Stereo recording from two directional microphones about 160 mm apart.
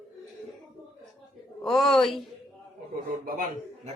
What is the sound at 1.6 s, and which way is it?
Speech, centre (ahead or behind).